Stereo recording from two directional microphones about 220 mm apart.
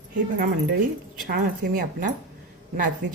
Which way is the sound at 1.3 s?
40° right (ahead or behind).